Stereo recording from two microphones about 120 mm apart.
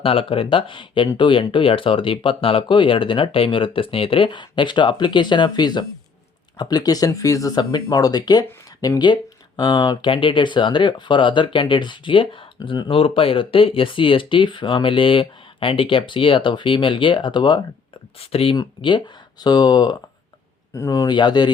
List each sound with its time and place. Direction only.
0.0 s speech: 50° left (ahead or behind)
18.2 s speech: 55° left (ahead or behind)
18.5 s speech: 40° left (ahead or behind)